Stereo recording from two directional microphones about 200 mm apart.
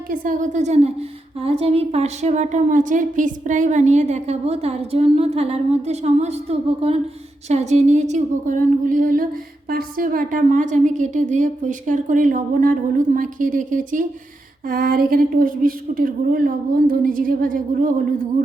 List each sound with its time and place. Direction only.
0.1 s a woman's voice: 40° right (ahead or behind)